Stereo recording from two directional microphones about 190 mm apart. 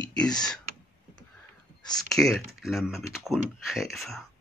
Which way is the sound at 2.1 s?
Centre (ahead or behind).